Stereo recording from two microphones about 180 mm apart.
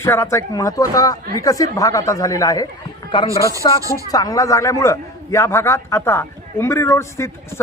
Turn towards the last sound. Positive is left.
turn(degrees=15)  # may be behind; listen again after turning